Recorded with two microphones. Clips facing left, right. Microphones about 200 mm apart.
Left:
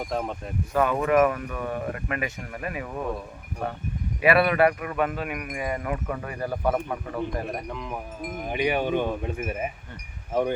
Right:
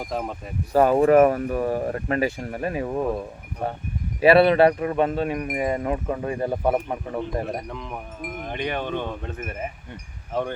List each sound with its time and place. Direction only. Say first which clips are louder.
0.0 s speech: even; 5° right (ahead or behind)
0.7 s speech: right 6 dB; 35° right (ahead or behind)
4.2 s speech: right 5 dB; 30° right (ahead or behind)
7.7 s speech: even; centre (ahead or behind)